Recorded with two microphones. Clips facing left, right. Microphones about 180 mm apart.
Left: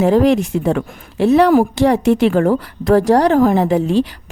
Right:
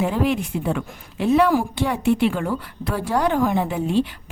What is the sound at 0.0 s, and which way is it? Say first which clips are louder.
Speech: left 9 dB; 90° left.